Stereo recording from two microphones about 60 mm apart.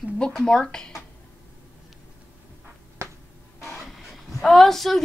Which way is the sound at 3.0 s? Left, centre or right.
Right.